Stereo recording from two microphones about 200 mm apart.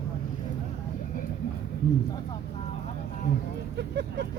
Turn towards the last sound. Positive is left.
turn(degrees=-60)  # may be behind; listen again after turning